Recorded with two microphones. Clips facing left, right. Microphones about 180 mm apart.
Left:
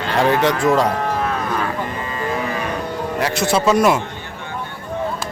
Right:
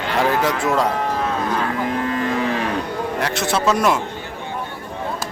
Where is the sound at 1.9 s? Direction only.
80° right.